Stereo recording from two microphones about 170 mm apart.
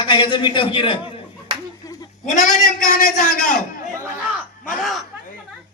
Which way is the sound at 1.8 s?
20° left (ahead or behind).